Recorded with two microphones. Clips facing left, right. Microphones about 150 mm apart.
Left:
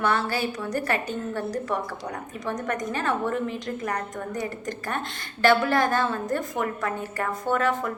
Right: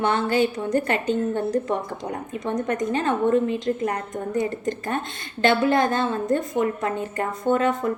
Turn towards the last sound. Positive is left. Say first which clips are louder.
# right 4 dB
turn(degrees=-25)  # may be behind; listen again after turning